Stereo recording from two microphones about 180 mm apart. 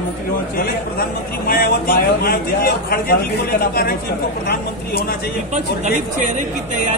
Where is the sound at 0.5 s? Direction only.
55° left (ahead or behind).